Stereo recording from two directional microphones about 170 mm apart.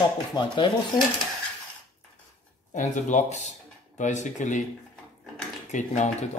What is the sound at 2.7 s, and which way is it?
Speech, 45° left (ahead or behind).